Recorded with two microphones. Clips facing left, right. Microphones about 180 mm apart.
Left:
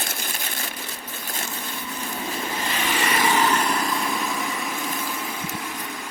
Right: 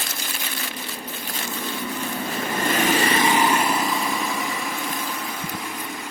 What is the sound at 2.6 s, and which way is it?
Vehicle, 50° right (ahead or behind).